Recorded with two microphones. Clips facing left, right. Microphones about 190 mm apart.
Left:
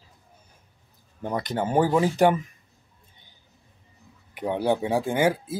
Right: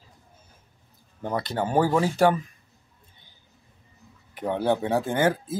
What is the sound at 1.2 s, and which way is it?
Speech, 15° left (ahead or behind).